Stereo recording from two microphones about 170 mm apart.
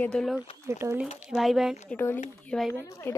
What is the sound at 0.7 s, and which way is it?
Speech, 15° right (ahead or behind).